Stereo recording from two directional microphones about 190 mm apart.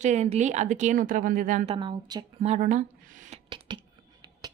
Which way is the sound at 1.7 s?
25° right (ahead or behind).